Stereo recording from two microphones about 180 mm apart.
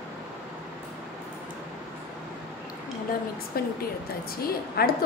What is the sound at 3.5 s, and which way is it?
A woman's voice, 55° left (ahead or behind).